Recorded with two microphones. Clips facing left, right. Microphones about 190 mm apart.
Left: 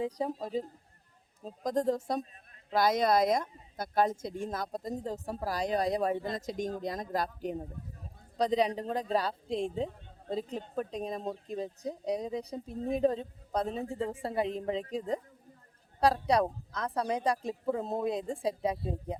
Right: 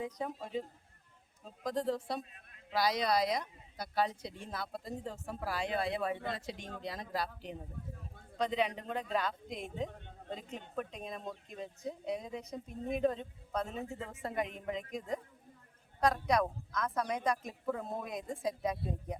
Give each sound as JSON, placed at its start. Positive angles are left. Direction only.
{"t": 0.0, "sound": "speech", "side_deg": 35}